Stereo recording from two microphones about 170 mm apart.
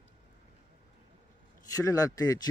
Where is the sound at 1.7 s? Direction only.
20° left (ahead or behind).